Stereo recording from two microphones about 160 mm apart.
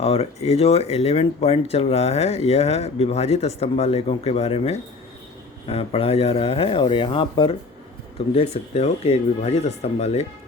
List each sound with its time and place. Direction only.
0.0 s speech: 40° left (ahead or behind)